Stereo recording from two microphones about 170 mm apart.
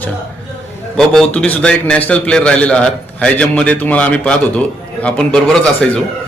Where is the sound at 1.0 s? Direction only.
5° left (ahead or behind).